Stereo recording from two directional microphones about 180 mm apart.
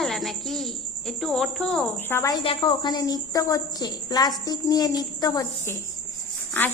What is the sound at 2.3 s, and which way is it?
A woman's voice, 30° left (ahead or behind).